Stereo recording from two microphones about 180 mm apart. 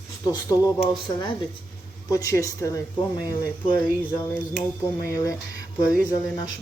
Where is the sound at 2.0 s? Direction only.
20° left (ahead or behind).